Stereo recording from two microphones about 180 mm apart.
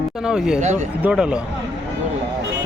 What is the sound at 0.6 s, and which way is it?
Speech, 40° right (ahead or behind).